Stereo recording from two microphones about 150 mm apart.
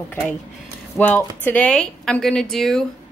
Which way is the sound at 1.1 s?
10° left (ahead or behind).